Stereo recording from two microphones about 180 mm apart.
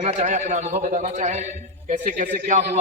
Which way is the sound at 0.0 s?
40° right (ahead or behind).